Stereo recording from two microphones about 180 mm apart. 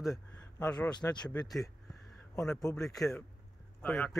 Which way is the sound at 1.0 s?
20° left (ahead or behind).